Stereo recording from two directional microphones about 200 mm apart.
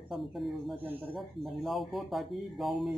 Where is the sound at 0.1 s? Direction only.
Centre (ahead or behind).